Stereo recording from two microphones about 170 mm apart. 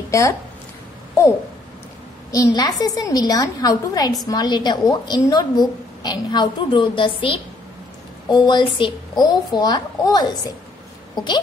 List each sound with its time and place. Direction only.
0.1 s a woman's voice: 20° left (ahead or behind)
2.3 s a woman's voice: 20° left (ahead or behind)